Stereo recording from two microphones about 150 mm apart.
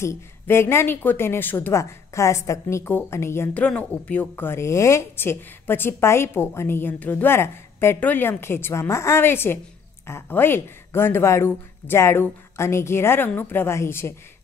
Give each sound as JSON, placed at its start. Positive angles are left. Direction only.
{"t": 0.0, "sound": "speech", "side_deg": 15}